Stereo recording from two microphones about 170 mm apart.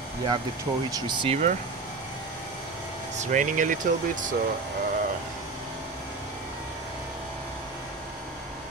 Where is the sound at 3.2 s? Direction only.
45° right (ahead or behind).